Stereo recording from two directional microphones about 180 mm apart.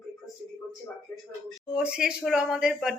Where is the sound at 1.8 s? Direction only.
5° right (ahead or behind).